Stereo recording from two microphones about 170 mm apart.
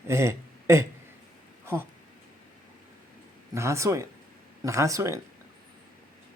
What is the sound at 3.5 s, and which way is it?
Speech, 15° right (ahead or behind).